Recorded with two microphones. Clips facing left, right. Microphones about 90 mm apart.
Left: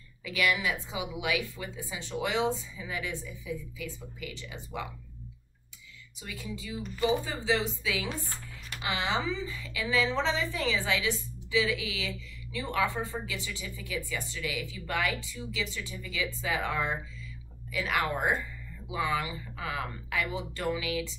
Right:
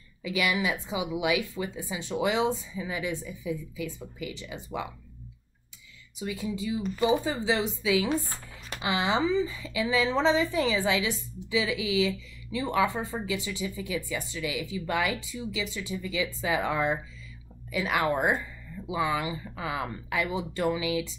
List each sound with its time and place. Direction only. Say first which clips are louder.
0.2 s a woman's voice: right 2 dB; 15° right (ahead or behind)
6.2 s a woman's voice: right 8 dB; 20° right (ahead or behind)